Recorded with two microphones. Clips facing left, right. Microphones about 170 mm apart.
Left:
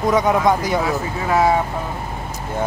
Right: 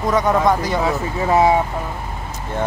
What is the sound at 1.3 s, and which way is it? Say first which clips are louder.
Speech: right 2 dB; 25° right (ahead or behind).